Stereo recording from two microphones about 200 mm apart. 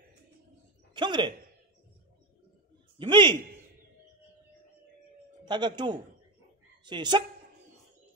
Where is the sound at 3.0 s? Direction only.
25° right (ahead or behind).